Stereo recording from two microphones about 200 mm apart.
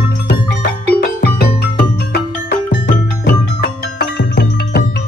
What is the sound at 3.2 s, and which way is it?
Music, 50° left (ahead or behind).